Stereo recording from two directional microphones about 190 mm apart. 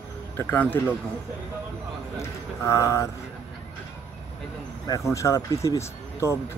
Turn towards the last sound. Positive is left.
turn(degrees=15)  # may be behind; listen again after turning